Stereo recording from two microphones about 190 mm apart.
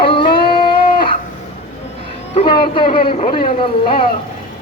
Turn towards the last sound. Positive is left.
turn(degrees=25)  # may be behind; listen again after turning